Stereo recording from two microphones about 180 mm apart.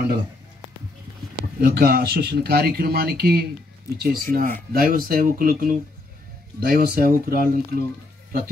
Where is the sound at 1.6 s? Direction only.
65° right (ahead or behind).